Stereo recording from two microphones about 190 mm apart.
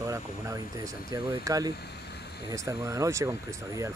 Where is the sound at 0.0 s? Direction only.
15° right (ahead or behind).